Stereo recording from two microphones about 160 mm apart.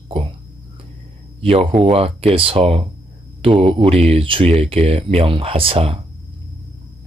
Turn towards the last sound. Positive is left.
turn(degrees=-35)  # may be behind; listen again after turning